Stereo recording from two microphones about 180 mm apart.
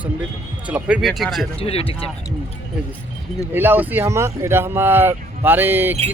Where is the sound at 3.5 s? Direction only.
10° right (ahead or behind).